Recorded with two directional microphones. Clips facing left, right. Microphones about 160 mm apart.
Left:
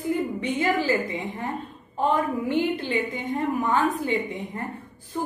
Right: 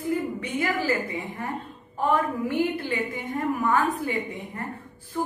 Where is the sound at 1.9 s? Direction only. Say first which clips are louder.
Left 1 dB; 20° left (ahead or behind).